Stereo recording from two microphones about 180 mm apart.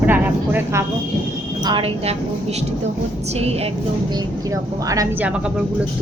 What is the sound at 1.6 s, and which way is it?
A woman's voice, 25° right (ahead or behind).